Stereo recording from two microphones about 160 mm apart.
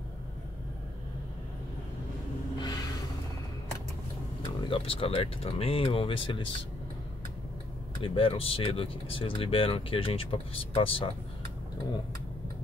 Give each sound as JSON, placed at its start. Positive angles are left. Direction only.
{"t": 2.6, "sound": "gasp", "side_deg": 25}
{"t": 4.5, "sound": "speech", "side_deg": 35}
{"t": 8.0, "sound": "speech", "side_deg": 35}